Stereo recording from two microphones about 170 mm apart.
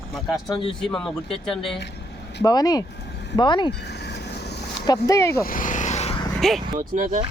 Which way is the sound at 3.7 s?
80° left.